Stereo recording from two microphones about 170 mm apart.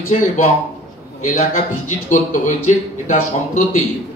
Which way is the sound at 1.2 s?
50° left (ahead or behind).